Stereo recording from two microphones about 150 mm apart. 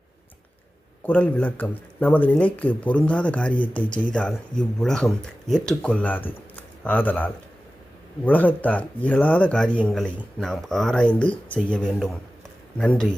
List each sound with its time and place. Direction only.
1.0 s speech: 10° left (ahead or behind)